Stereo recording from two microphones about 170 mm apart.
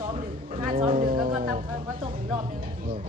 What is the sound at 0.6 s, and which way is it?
Speech, 35° right (ahead or behind).